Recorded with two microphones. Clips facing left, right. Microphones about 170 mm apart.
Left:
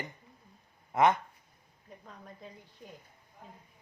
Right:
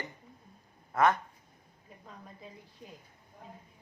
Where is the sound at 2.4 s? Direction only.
5° right (ahead or behind).